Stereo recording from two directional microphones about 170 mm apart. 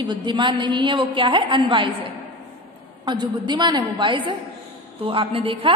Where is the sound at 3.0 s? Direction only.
25° right (ahead or behind).